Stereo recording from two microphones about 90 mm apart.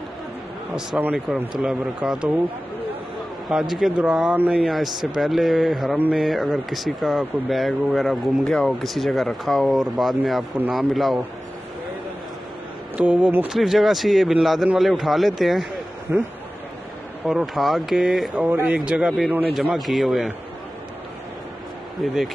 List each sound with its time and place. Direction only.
0.9 s speech: 10° right (ahead or behind)
3.4 s speech: 5° right (ahead or behind)
4.6 s speech: centre (ahead or behind)
12.9 s speech: 15° right (ahead or behind)
13.5 s speech: 5° right (ahead or behind)
16.1 s speech: 20° right (ahead or behind)
17.3 s speech: 5° right (ahead or behind)
18.3 s speech: 20° right (ahead or behind)
18.9 s speech: 10° right (ahead or behind)
22.0 s speech: centre (ahead or behind)